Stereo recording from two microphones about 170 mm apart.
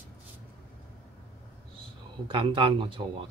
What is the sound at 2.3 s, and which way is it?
Speech, 30° right (ahead or behind).